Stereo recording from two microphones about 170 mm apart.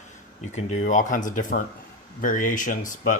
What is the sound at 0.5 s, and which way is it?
Speech, 45° left (ahead or behind).